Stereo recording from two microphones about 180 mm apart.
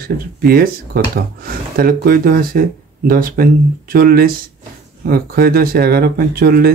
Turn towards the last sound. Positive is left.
turn(degrees=-55)  # may be behind; listen again after turning